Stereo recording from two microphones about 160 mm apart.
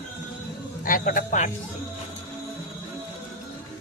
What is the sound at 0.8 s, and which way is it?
Speech, 60° left (ahead or behind).